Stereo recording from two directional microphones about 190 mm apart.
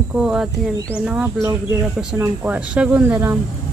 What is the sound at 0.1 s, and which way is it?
Speech, 5° right (ahead or behind).